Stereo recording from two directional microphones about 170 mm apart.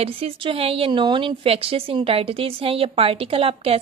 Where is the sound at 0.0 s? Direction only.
35° right (ahead or behind).